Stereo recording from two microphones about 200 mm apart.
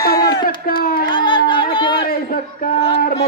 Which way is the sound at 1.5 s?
25° left (ahead or behind).